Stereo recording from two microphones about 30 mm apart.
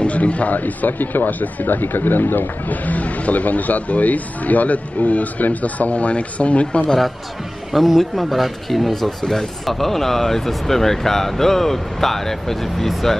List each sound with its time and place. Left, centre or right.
0.0 s a man's voice: left
0.6 s speech: left
7.7 s speech: centre